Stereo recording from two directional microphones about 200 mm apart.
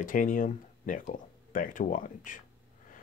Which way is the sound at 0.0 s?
45° left (ahead or behind).